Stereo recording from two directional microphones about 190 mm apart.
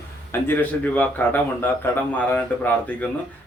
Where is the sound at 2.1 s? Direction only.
10° left (ahead or behind).